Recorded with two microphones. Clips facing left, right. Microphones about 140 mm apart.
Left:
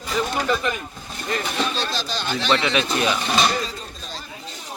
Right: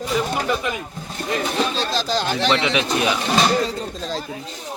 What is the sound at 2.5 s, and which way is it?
Speech, 20° right (ahead or behind).